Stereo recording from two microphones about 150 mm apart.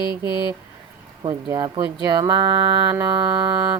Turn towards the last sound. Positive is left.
turn(degrees=-25)  # may be behind; listen again after turning